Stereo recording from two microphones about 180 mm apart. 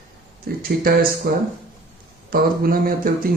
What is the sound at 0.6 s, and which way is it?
A man's voice, 55° right (ahead or behind).